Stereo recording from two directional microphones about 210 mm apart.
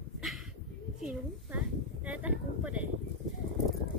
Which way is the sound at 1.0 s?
5° right (ahead or behind).